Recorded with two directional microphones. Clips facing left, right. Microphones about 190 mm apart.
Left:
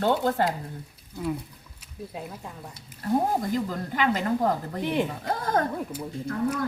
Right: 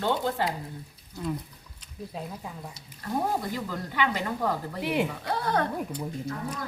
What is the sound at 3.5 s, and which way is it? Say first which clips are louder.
A woman's voice: left 4 dB; 45° left (ahead or behind).